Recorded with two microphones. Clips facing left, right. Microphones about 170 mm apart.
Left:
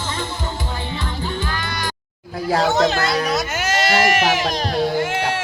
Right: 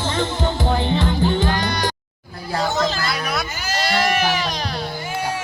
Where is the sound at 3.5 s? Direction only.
85° left.